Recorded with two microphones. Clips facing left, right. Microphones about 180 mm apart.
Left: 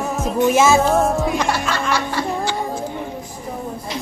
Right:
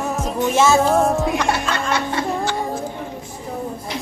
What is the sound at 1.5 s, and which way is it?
Music, 20° right (ahead or behind).